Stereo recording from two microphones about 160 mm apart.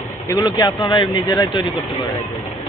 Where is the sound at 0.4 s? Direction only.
25° left (ahead or behind).